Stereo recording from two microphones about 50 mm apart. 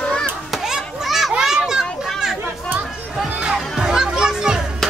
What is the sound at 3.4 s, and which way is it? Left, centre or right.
Children playing, centre.